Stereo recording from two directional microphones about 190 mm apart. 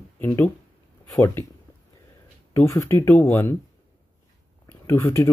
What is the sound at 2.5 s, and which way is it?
Speech, 15° left (ahead or behind).